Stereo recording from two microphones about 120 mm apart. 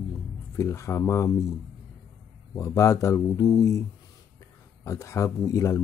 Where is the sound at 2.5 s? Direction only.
25° left (ahead or behind).